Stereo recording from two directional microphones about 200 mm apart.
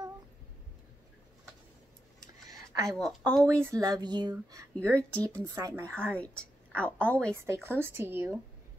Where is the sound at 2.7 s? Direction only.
15° right (ahead or behind).